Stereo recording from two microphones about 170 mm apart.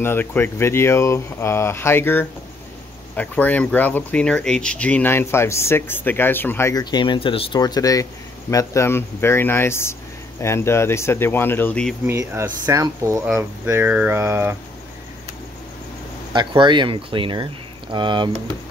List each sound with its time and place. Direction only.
0.0 s speech: 10° left (ahead or behind)
12.1 s speech: 15° right (ahead or behind)
16.3 s speech: 25° right (ahead or behind)